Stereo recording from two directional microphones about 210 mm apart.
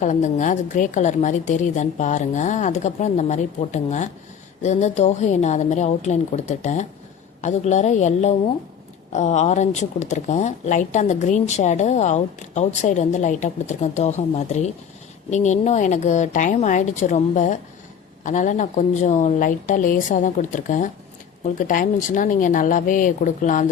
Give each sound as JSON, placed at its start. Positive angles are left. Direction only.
{"t": 0.0, "sound": "speech", "side_deg": 35}